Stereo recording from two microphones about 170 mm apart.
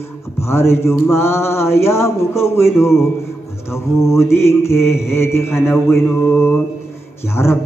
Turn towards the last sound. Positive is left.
turn(degrees=15)  # may be behind; listen again after turning